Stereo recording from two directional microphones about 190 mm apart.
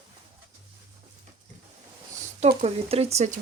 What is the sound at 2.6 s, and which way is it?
Speech, 35° right (ahead or behind).